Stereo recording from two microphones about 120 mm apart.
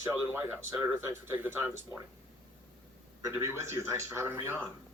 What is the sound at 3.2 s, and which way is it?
Speech, 20° right (ahead or behind).